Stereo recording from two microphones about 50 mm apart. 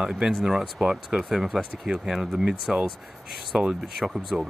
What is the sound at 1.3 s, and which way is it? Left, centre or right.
Speech, centre.